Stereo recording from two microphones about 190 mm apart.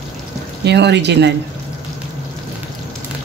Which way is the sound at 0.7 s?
65° right (ahead or behind).